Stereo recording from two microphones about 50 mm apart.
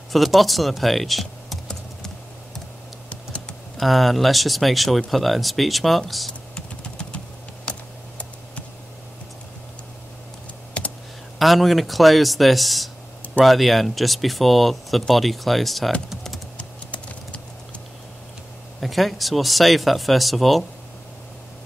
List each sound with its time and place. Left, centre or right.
0.1 s typing: centre
3.7 s speech: centre
6.5 s a sound: centre
10.8 s computer keyboard: left
11.3 s speech: centre
16.5 s computer keyboard: left
18.8 s speech: centre